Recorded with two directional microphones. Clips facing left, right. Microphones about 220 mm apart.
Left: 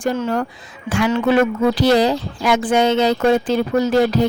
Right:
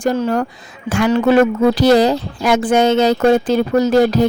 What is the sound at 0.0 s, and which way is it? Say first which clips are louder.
Speech: right 3 dB; 40° right (ahead or behind).